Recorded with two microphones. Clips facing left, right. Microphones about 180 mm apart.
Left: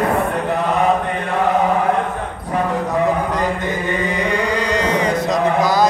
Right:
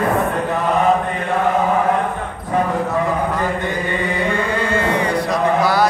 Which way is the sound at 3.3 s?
20° left (ahead or behind).